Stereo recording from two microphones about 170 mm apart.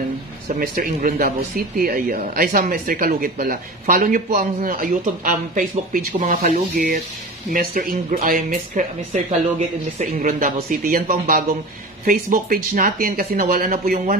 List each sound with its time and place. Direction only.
0.6 s speech: 55° right (ahead or behind)